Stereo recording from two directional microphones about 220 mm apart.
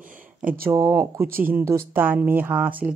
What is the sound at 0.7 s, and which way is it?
A woman's voice, 10° right (ahead or behind).